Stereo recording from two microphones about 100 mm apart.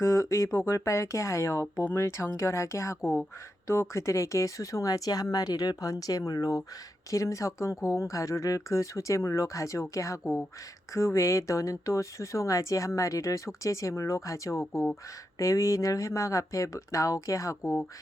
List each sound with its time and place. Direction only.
0.0 s speech: 30° left (ahead or behind)